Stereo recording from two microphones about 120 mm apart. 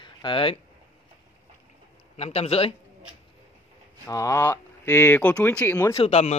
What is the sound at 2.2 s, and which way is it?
Speech, 60° left (ahead or behind).